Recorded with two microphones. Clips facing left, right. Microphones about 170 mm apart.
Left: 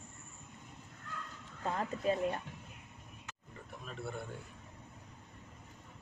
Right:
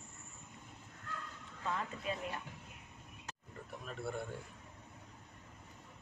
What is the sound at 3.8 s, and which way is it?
Speech, centre (ahead or behind).